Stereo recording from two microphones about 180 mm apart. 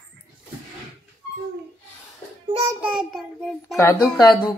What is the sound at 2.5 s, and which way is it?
Child singing, 25° right (ahead or behind).